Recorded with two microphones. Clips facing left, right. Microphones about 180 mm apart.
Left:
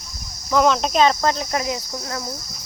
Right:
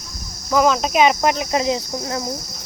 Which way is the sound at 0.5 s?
5° right (ahead or behind).